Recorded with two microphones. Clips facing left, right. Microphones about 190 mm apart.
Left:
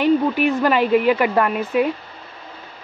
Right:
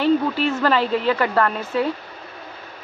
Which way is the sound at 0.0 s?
15° left (ahead or behind).